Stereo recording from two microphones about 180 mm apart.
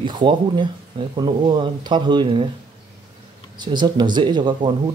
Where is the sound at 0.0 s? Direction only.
25° right (ahead or behind).